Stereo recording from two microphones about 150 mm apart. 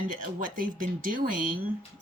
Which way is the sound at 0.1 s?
65° right (ahead or behind).